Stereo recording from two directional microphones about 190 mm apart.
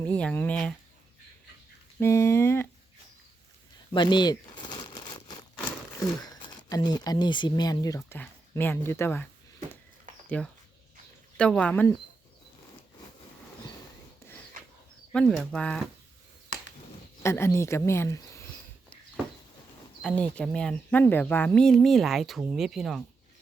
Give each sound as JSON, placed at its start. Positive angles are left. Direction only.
{"t": 0.0, "sound": "a sound", "side_deg": 5}
{"t": 2.0, "sound": "a sound", "side_deg": 15}
{"t": 3.9, "sound": "crumpling", "side_deg": 25}
{"t": 6.0, "sound": "speech", "side_deg": 20}
{"t": 10.2, "sound": "speech", "side_deg": 5}
{"t": 15.1, "sound": "speech", "side_deg": 0}
{"t": 17.2, "sound": "speech", "side_deg": 15}
{"t": 20.0, "sound": "speech", "side_deg": 5}